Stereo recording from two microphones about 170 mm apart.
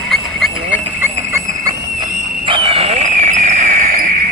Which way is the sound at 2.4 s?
30° right (ahead or behind).